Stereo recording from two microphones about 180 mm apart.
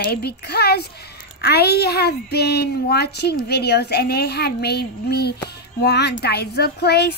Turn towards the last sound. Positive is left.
turn(degrees=65)  # may be behind; listen again after turning